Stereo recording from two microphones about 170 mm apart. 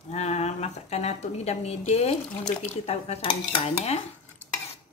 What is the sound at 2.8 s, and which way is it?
Dishes, 40° left (ahead or behind).